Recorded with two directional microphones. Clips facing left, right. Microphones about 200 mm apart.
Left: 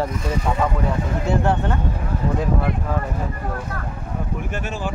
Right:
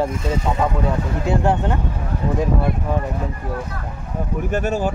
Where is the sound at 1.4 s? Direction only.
15° right (ahead or behind).